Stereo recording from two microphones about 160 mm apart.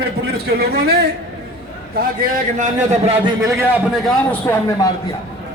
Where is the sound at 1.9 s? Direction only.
55° right (ahead or behind); by 3.3 s 40° right (ahead or behind).